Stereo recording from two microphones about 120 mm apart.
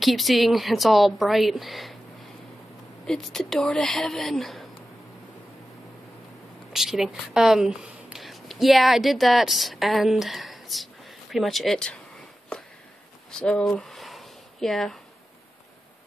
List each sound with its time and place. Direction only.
0.0 s a woman's voice: centre (ahead or behind)
3.1 s a woman's voice: 5° left (ahead or behind)
6.7 s speech: 5° right (ahead or behind)
13.3 s a sound: 5° left (ahead or behind)